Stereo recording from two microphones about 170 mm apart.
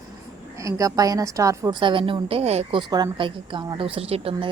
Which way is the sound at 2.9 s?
25° right (ahead or behind).